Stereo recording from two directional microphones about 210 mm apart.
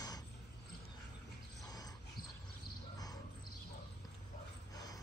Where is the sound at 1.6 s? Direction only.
20° left (ahead or behind).